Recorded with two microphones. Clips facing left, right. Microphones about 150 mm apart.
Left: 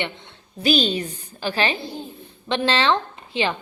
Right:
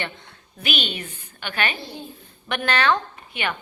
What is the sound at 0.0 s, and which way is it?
Speech, 25° left (ahead or behind).